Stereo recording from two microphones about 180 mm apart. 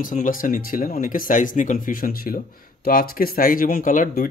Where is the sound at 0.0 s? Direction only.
45° left (ahead or behind).